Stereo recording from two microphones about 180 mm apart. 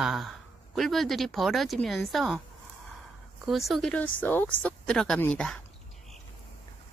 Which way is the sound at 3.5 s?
Centre (ahead or behind).